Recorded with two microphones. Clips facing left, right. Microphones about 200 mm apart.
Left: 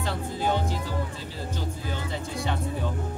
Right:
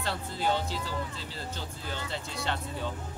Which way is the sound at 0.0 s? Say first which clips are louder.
Left 3 dB; 15° left (ahead or behind).